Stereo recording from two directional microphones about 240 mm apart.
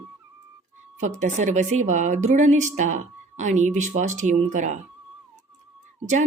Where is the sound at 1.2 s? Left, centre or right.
Right.